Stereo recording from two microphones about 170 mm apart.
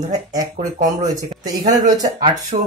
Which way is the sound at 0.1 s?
20° right (ahead or behind).